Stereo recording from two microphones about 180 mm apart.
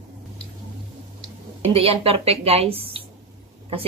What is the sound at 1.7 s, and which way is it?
A woman's voice, 30° right (ahead or behind).